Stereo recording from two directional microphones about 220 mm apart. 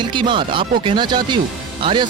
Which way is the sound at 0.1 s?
20° right (ahead or behind).